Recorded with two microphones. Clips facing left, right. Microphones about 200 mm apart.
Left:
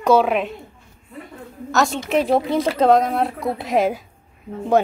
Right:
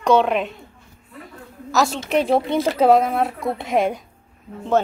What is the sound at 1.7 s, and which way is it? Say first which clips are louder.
A woman's voice: even; centre (ahead or behind).